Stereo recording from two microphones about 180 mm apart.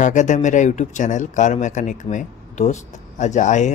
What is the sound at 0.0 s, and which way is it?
Speech, 45° left (ahead or behind).